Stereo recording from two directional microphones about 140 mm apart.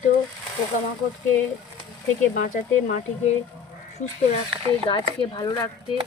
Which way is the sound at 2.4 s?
70° left (ahead or behind).